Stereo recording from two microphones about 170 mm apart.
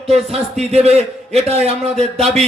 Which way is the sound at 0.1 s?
35° right (ahead or behind).